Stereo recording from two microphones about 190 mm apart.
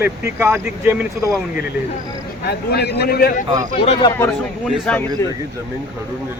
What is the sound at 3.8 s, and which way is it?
Speech, 30° left (ahead or behind).